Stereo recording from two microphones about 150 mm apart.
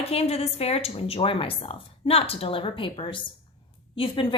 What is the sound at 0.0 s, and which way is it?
A woman's voice, 40° left (ahead or behind).